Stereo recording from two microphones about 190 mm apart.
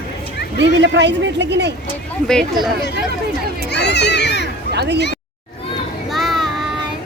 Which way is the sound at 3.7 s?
60° left (ahead or behind).